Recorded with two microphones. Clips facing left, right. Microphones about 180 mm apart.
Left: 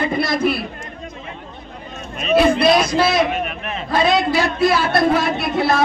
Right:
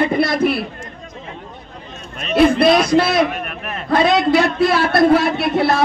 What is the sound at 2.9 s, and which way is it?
Speech, 60° right (ahead or behind).